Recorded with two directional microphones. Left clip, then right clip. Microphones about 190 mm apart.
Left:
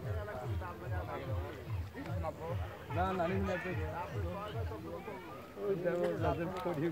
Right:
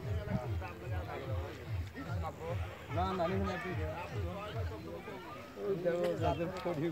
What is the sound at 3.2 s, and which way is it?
Speech, 35° left (ahead or behind).